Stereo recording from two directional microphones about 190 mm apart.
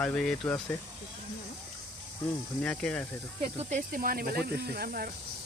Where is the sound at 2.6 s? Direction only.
5° left (ahead or behind).